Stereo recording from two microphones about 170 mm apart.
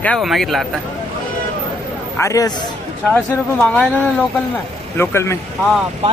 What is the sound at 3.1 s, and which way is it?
Speech, 10° left (ahead or behind).